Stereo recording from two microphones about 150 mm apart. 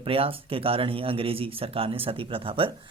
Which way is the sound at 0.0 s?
40° right (ahead or behind).